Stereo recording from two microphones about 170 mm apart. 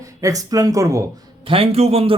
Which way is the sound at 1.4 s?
35° right (ahead or behind).